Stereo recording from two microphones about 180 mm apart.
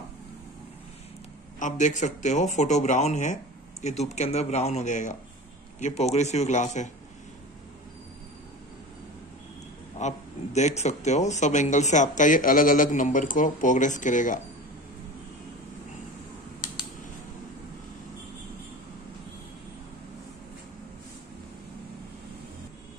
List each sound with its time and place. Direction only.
1.6 s speech: 45° left (ahead or behind)
9.9 s speech: 40° left (ahead or behind)